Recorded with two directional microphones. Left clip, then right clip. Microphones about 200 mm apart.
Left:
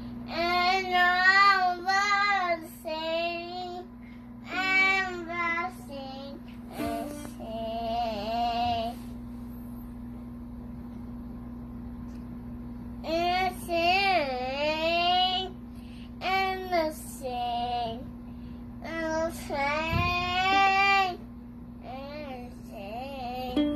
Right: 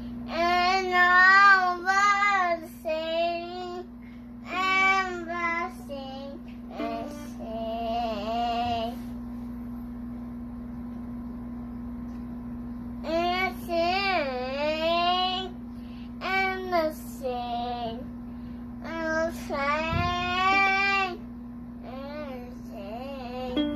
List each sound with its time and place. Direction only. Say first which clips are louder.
0.3 s a sound: right 2 dB; 10° right (ahead or behind)
1.2 s child singing: right 3 dB; centre (ahead or behind)
6.8 s music: even; centre (ahead or behind)
7.5 s mantra: right 1 dB; 10° right (ahead or behind)
13.0 s child singing: even; 10° right (ahead or behind)
22.9 s music: left 2 dB; 10° right (ahead or behind)